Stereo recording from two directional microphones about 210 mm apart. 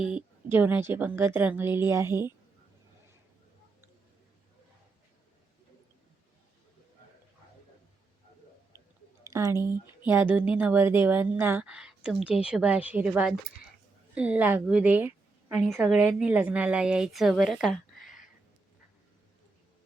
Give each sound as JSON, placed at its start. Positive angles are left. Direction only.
{"t": 0.0, "sound": "a woman's voice", "side_deg": -5}
{"t": 9.2, "sound": "a sound", "side_deg": -15}
{"t": 10.1, "sound": "a woman's voice", "side_deg": -10}